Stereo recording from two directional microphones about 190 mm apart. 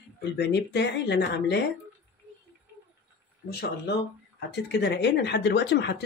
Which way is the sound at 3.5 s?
60° left (ahead or behind).